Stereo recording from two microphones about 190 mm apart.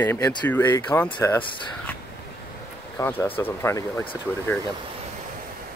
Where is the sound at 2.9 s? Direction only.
15° left (ahead or behind).